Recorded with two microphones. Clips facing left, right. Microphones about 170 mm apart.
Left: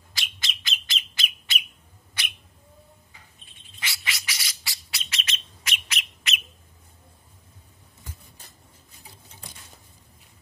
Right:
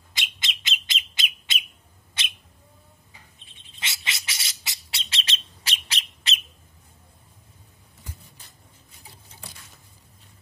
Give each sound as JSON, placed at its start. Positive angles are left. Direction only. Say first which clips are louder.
{"t": 0.1, "sound": "bird", "louder": "right 1 dB", "side_deg": -20}
{"t": 2.2, "sound": "cat", "louder": "even", "side_deg": -25}
{"t": 3.8, "sound": "bird", "louder": "left 1 dB", "side_deg": -20}